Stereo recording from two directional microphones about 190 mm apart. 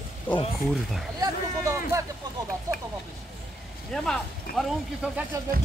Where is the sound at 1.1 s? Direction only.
15° right (ahead or behind).